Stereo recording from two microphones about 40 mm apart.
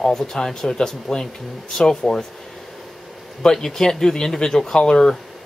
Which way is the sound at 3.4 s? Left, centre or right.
Centre.